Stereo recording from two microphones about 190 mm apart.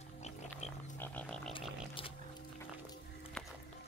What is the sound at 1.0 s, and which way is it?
Frog, 10° left (ahead or behind).